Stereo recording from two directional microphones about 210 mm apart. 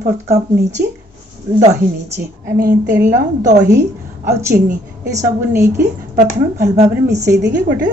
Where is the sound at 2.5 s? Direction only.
40° right (ahead or behind).